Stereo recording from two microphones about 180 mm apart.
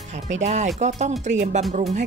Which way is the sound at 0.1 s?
40° right (ahead or behind).